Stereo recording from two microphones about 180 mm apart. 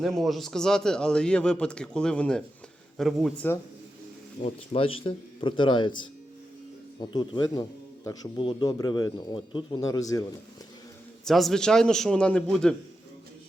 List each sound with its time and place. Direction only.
0.0 s a man's voice: centre (ahead or behind)
4.4 s speech: 35° left (ahead or behind); by 10.2 s 20° left (ahead or behind)
11.3 s a man's voice: centre (ahead or behind)